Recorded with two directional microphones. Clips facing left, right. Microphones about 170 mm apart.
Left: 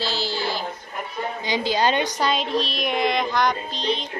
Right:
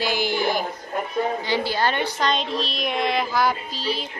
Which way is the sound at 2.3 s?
Centre (ahead or behind).